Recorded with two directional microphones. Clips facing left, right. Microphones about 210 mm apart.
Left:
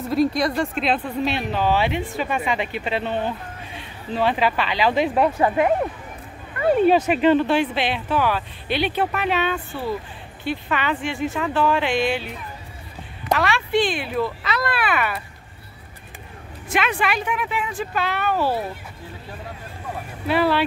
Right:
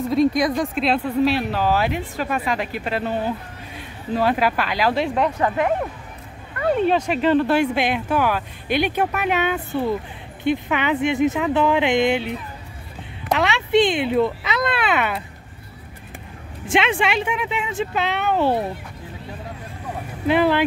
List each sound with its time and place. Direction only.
0.4 s speech: centre (ahead or behind); by 12.4 s 20° right (ahead or behind)
13.4 s speech: 20° right (ahead or behind)
16.6 s speech: 25° right (ahead or behind)
20.2 s speech: 15° right (ahead or behind)